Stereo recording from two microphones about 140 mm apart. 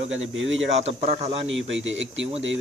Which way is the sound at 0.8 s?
50° right (ahead or behind).